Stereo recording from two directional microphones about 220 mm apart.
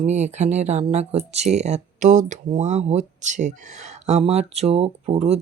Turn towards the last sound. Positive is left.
turn(degrees=-30)  # may be behind; listen again after turning